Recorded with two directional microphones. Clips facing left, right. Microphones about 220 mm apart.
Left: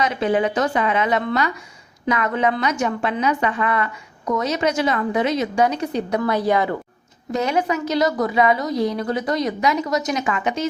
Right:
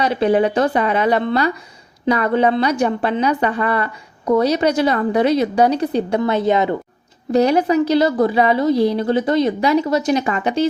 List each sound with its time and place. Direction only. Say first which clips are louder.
0.0 s a woman's voice: right 4 dB; 35° right (ahead or behind)
7.3 s a woman's voice: right 6 dB; 35° right (ahead or behind)